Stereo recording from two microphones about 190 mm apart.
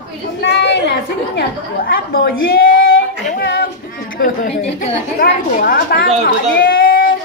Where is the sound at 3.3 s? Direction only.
55° left (ahead or behind).